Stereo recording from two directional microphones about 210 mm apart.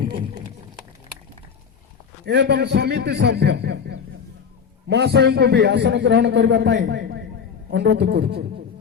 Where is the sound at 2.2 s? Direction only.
55° right (ahead or behind).